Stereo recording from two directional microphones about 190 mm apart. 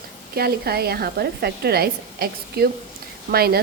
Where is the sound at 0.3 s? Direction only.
55° right (ahead or behind).